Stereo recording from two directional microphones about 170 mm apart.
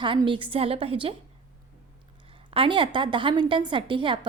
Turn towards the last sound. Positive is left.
turn(degrees=-30)  # may be behind; listen again after turning